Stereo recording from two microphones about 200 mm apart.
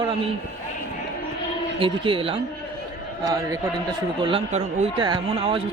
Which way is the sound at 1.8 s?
25° right (ahead or behind).